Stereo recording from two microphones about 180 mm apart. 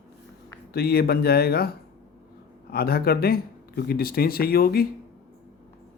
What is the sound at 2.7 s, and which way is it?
Speech, 60° left (ahead or behind).